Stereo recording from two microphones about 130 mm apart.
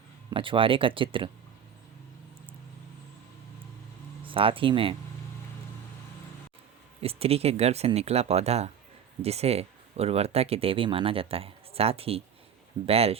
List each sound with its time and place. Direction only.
0.3 s speech: 40° right (ahead or behind)
4.2 s speech: 40° right (ahead or behind)
7.0 s speech: 50° right (ahead or behind)